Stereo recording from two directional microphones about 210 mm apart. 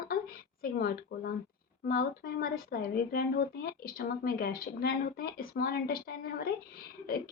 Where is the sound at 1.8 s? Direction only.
45° left (ahead or behind).